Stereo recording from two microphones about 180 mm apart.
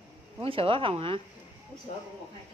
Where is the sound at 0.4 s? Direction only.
30° right (ahead or behind).